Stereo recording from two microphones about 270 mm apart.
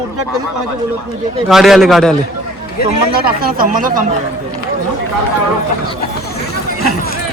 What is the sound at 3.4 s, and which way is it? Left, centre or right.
Speech, right.